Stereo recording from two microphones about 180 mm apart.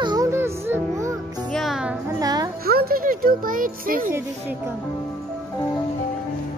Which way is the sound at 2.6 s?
60° right (ahead or behind).